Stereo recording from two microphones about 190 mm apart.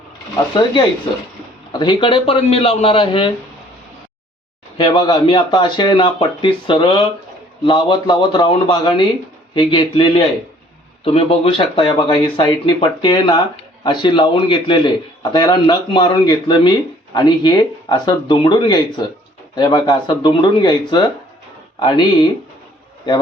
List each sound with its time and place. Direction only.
1.8 s a man's voice: 25° left (ahead or behind)
4.8 s a man's voice: 25° left (ahead or behind)